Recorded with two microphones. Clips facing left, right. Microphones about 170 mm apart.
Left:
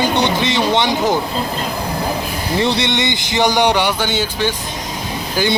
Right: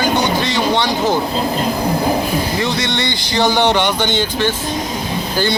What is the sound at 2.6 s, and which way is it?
Speech, 30° left (ahead or behind).